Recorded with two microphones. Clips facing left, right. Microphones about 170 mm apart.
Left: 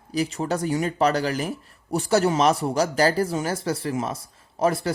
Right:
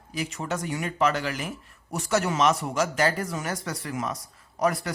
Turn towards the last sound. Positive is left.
turn(degrees=25)  # may be behind; listen again after turning